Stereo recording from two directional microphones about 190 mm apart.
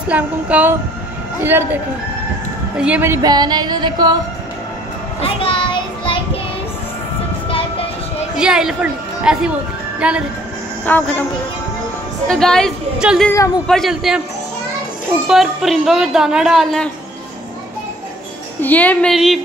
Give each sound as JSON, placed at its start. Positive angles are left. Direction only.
{"t": 0.1, "sound": "a woman's voice", "side_deg": -10}
{"t": 2.8, "sound": "a woman's voice", "side_deg": -10}
{"t": 5.2, "sound": "child singing", "side_deg": 30}
{"t": 7.4, "sound": "music", "side_deg": 30}
{"t": 8.4, "sound": "a woman's voice", "side_deg": -5}
{"t": 10.9, "sound": "a woman's voice", "side_deg": 10}
{"t": 12.3, "sound": "speech", "side_deg": 5}
{"t": 15.2, "sound": "speech", "side_deg": 0}
{"t": 18.6, "sound": "a woman's voice", "side_deg": 10}